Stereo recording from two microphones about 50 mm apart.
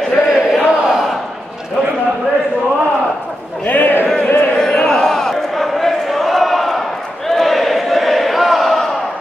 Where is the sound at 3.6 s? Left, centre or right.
Left.